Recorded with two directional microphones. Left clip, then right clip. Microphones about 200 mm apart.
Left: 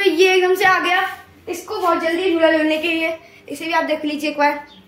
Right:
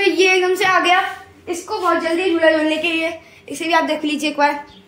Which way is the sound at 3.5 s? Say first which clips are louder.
Right 2 dB; 30° right (ahead or behind).